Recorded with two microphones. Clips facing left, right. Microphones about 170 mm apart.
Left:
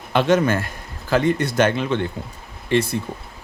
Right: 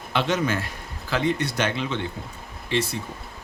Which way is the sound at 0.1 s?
50° left (ahead or behind).